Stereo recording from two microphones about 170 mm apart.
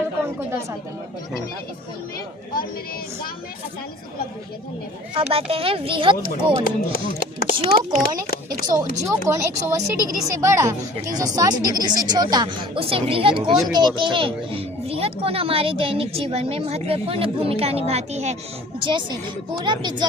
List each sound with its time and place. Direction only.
5.1 s speech: 35° right (ahead or behind)
6.7 s speech: 55° left (ahead or behind)
7.6 s speech: 35° right (ahead or behind)
8.6 s speech: 25° right (ahead or behind); by 18.3 s 40° right (ahead or behind)
18.8 s speech: 30° right (ahead or behind)